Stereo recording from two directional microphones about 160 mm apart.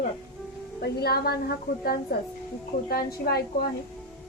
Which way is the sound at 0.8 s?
80° left.